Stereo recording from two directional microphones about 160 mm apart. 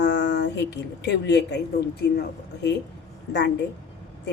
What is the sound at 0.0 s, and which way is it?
A woman's voice, 90° left.